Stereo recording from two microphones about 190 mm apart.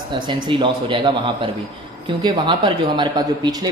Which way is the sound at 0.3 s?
25° right (ahead or behind).